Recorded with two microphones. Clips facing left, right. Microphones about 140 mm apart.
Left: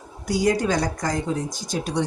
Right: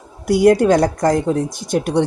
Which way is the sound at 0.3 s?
60° right (ahead or behind).